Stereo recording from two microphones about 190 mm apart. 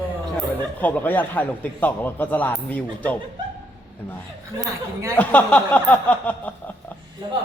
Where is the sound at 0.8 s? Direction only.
10° left (ahead or behind).